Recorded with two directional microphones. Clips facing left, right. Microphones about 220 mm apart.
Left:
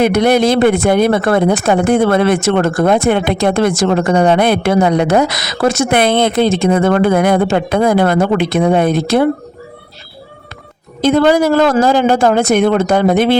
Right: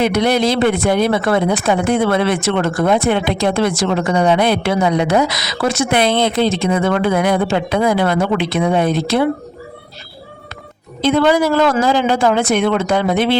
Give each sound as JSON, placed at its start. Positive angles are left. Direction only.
{"t": 0.0, "sound": "speech", "side_deg": 50}
{"t": 11.0, "sound": "speech", "side_deg": 45}